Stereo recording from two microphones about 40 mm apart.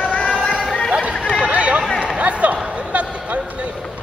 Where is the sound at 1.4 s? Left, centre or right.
Right.